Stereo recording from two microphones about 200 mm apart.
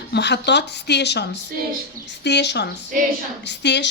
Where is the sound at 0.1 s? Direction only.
60° left (ahead or behind).